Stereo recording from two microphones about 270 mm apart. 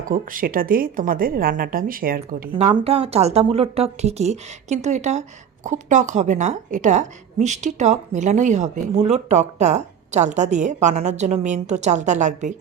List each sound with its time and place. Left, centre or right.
0.0 s a woman's voice: right
2.5 s a woman's voice: centre